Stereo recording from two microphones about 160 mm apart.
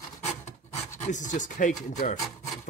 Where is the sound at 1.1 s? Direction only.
50° left (ahead or behind).